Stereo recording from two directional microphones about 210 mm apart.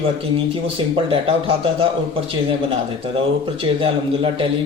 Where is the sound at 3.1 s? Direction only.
25° right (ahead or behind).